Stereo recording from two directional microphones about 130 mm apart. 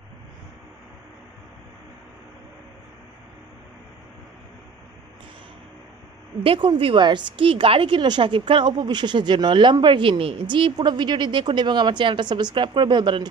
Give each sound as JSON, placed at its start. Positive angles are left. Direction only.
{"t": 6.4, "sound": "a woman's voice", "side_deg": -45}